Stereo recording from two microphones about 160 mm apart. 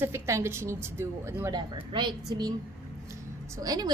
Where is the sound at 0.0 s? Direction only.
15° right (ahead or behind).